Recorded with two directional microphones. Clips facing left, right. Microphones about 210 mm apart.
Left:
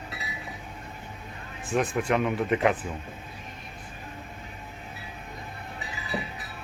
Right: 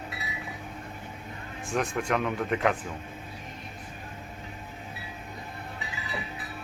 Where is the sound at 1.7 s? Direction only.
Centre (ahead or behind).